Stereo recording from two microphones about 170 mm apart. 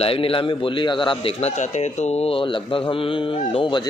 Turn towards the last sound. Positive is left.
turn(degrees=30)  # may be behind; listen again after turning